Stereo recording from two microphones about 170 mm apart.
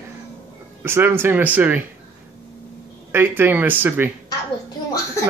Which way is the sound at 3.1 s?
10° right (ahead or behind).